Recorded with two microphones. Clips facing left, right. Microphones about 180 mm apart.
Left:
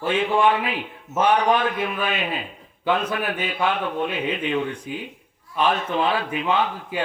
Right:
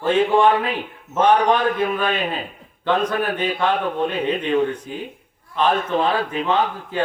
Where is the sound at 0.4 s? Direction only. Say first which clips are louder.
Right 3 dB; 40° right (ahead or behind).